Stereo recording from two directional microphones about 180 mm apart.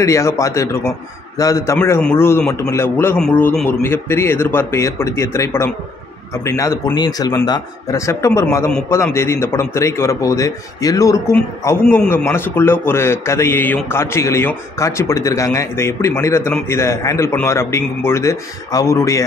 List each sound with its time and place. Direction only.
0.0 s a man's voice: 15° left (ahead or behind)